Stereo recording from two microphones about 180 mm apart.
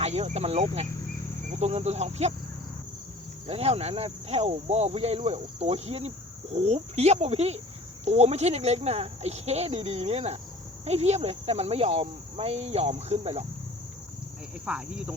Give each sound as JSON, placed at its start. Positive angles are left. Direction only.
{"t": 0.0, "sound": "speech", "side_deg": -35}
{"t": 3.4, "sound": "speech", "side_deg": -35}
{"t": 14.6, "sound": "speech", "side_deg": -5}